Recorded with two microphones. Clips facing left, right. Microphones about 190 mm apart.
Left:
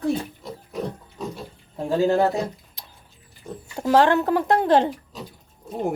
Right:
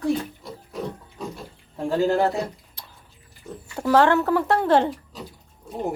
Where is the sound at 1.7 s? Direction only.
15° left (ahead or behind).